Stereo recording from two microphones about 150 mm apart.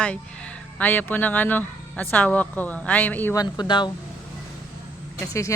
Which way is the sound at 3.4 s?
30° left (ahead or behind).